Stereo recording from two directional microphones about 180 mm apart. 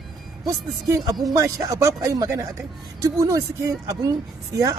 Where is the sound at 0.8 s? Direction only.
15° right (ahead or behind).